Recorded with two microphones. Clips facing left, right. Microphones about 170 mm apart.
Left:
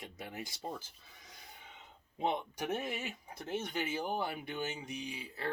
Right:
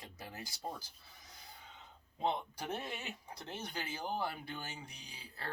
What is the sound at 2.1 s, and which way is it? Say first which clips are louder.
Speech: left 2 dB; 15° left (ahead or behind).